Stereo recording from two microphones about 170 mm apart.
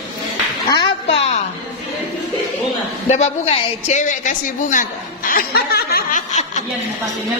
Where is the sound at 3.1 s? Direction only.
40° left (ahead or behind); by 6.2 s 65° left (ahead or behind).